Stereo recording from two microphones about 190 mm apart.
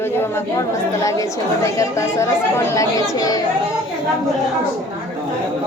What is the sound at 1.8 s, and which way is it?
Speech, 15° left (ahead or behind).